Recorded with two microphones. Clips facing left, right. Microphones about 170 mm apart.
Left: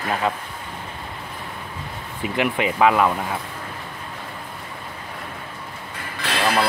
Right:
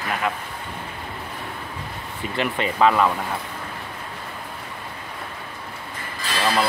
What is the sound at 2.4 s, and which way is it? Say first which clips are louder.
Speech: left 1 dB; 10° left (ahead or behind).